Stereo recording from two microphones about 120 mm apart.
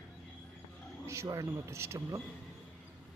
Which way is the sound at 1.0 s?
20° right (ahead or behind).